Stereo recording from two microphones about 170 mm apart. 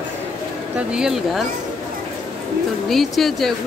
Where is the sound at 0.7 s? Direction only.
5° right (ahead or behind).